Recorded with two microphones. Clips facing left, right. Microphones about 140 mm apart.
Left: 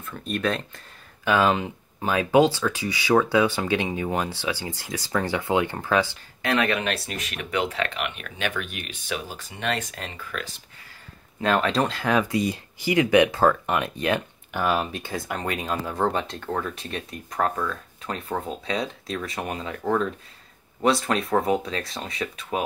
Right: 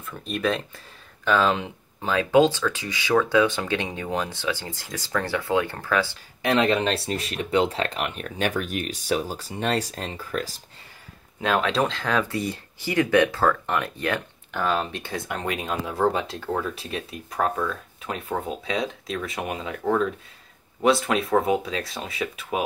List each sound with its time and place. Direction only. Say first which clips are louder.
0.0 s speech: even; centre (ahead or behind)
1.2 s speech: left 1 dB; 10° left (ahead or behind)
6.4 s speech: right 3 dB; 20° right (ahead or behind); by 10.5 s 35° right (ahead or behind)
11.4 s speech: even; centre (ahead or behind)